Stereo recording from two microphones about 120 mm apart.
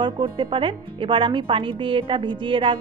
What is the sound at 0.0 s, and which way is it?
Speech, 45° right (ahead or behind).